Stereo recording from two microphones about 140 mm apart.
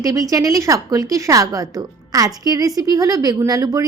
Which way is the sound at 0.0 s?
25° right (ahead or behind).